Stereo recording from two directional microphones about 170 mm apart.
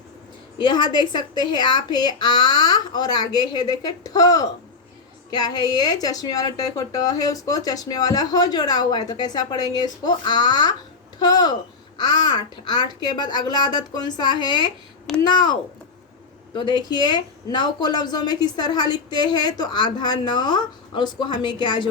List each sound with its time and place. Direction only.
0.6 s a woman's voice: 25° left (ahead or behind)
16.6 s a woman's voice: 25° left (ahead or behind)